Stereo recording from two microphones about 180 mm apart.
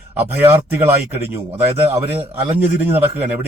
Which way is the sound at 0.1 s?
10° right (ahead or behind).